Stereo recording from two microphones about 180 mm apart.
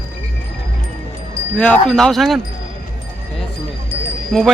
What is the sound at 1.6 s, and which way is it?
Speech, 5° left (ahead or behind).